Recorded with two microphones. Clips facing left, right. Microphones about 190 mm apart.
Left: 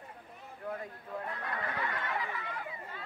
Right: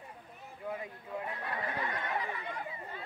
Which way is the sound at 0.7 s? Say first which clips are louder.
Even; 10° right (ahead or behind).